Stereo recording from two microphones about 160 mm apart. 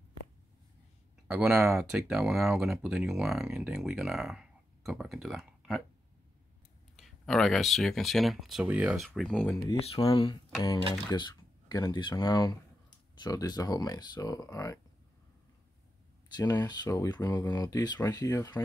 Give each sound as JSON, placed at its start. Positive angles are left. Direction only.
{"t": 1.2, "sound": "speech", "side_deg": -5}
{"t": 7.0, "sound": "speech", "side_deg": 0}
{"t": 9.9, "sound": "speech", "side_deg": 25}
{"t": 11.1, "sound": "a sound", "side_deg": 25}
{"t": 11.9, "sound": "speech", "side_deg": 30}
{"t": 16.3, "sound": "speech", "side_deg": 25}